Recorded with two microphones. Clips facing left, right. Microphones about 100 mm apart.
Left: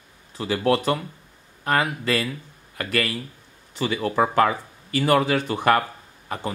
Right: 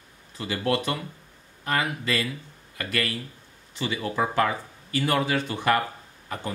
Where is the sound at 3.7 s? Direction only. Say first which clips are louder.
Left 5 dB; 50° left (ahead or behind).